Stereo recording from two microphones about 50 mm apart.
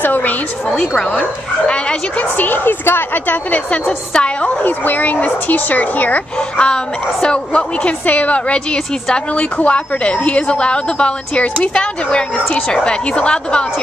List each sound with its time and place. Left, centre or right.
0.0 s a woman's voice: left
1.7 s a woman's voice: left
2.3 s speech: left
3.5 s a woman's voice: left
4.1 s a woman's voice: centre
4.6 s speech: left
6.6 s a woman's voice: centre
8.1 s a woman's voice: left